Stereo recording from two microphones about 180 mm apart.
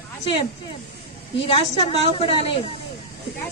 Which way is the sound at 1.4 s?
30° left (ahead or behind).